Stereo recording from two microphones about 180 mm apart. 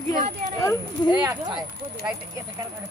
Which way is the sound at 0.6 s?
15° left (ahead or behind).